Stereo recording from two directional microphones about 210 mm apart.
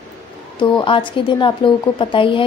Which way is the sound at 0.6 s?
25° left (ahead or behind).